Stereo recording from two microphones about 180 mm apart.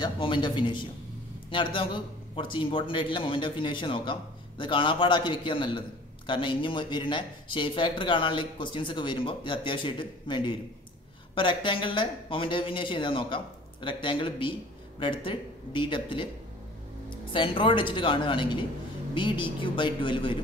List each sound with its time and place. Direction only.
0.0 s a man's voice: 25° left (ahead or behind)